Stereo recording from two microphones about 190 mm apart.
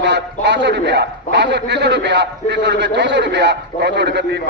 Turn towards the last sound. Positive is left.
turn(degrees=-65)  # may be behind; listen again after turning